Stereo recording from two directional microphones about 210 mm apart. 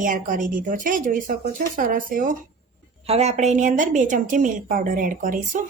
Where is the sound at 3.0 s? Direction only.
30° right (ahead or behind).